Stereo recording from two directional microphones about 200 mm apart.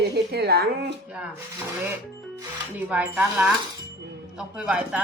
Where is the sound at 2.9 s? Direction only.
5° right (ahead or behind).